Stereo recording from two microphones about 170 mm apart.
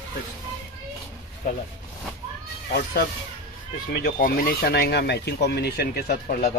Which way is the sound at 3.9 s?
60° left (ahead or behind).